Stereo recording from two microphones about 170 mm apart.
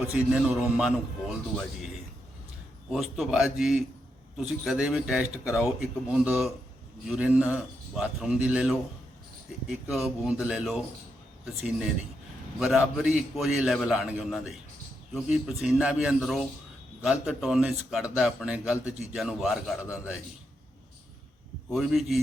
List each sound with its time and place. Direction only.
0.1 s a man's voice: 5° right (ahead or behind)
2.9 s a man's voice: centre (ahead or behind)
12.5 s a man's voice: centre (ahead or behind)
21.7 s a man's voice: centre (ahead or behind)